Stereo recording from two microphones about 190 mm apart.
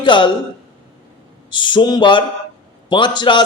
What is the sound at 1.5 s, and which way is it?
A man's voice, 25° left (ahead or behind).